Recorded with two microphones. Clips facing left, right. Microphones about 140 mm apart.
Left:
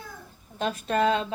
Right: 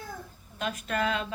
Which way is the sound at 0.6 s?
30° left (ahead or behind).